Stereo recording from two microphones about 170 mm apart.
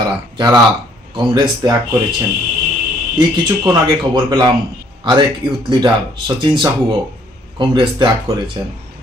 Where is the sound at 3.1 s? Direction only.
30° right (ahead or behind).